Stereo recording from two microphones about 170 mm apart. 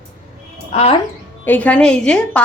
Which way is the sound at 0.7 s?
40° left (ahead or behind).